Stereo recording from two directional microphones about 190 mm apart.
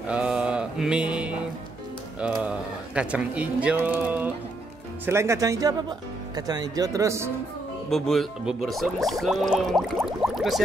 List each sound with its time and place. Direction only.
0.1 s mantra: 5° right (ahead or behind)
2.4 s speech: 5° right (ahead or behind)
7.9 s speech: centre (ahead or behind)